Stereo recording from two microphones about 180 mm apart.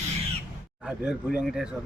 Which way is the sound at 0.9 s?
5° right (ahead or behind).